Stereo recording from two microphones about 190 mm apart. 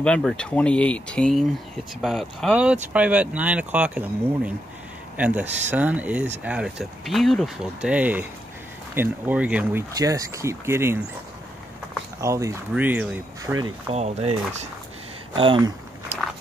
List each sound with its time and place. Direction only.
0.0 s speech: 5° left (ahead or behind)
5.1 s speech: 5° right (ahead or behind)
12.2 s speech: 15° right (ahead or behind)
13.9 s speech: 35° right (ahead or behind)